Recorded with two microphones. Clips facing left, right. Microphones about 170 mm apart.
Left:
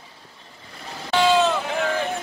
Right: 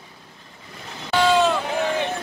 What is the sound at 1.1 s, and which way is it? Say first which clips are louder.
Vehicle: even; 5° left (ahead or behind).